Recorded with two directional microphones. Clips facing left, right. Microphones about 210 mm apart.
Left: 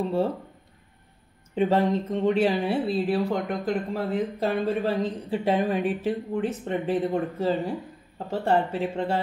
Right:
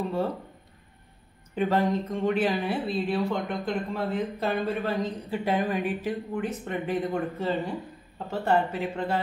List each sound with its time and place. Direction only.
1.5 s speech: 25° left (ahead or behind)